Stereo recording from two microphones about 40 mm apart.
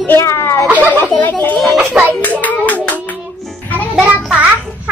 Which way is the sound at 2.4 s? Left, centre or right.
Left.